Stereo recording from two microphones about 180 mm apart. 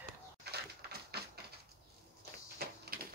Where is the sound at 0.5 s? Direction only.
60° right (ahead or behind).